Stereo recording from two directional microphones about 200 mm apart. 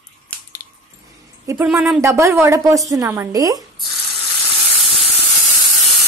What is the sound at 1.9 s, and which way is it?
A woman's voice, 15° right (ahead or behind).